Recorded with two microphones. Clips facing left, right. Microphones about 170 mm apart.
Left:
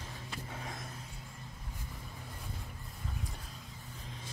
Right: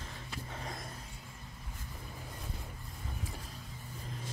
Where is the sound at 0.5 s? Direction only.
Centre (ahead or behind).